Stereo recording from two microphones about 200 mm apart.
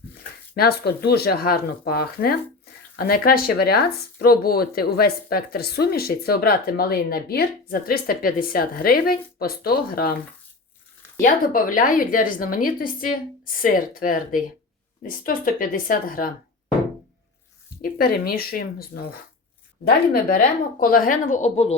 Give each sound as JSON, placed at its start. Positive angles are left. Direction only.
{"t": 0.5, "sound": "speech", "side_deg": 50}
{"t": 11.2, "sound": "speech", "side_deg": 45}
{"t": 17.8, "sound": "speech", "side_deg": 50}
{"t": 20.3, "sound": "speech", "side_deg": 45}